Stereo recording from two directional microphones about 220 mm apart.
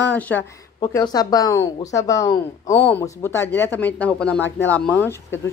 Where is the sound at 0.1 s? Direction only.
5° left (ahead or behind).